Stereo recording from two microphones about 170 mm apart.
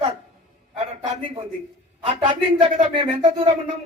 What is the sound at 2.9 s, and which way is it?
Speech, 30° right (ahead or behind).